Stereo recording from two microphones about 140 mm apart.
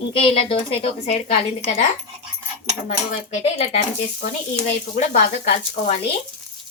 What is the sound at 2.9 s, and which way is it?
Speech, 50° left (ahead or behind).